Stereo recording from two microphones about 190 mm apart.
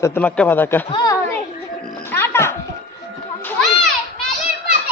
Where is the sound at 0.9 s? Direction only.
25° left (ahead or behind).